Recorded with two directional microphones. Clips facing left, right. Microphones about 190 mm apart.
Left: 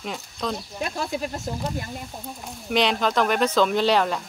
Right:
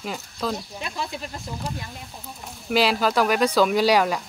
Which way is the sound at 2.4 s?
5° right (ahead or behind).